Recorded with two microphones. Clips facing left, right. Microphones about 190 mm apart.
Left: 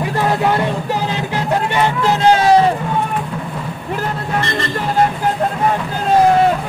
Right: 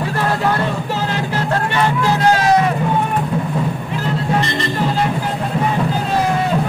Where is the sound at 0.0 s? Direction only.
15° left (ahead or behind).